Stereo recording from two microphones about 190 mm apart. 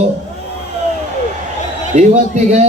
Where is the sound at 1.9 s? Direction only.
35° right (ahead or behind).